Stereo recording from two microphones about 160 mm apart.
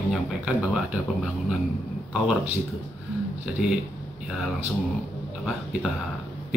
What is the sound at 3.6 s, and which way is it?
Speech, 5° right (ahead or behind).